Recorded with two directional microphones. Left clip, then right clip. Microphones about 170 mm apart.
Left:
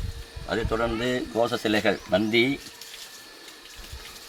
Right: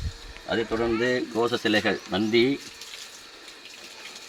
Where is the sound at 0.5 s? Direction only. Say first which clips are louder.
Right 1 dB; 25° left (ahead or behind); by 2.5 s 45° left (ahead or behind).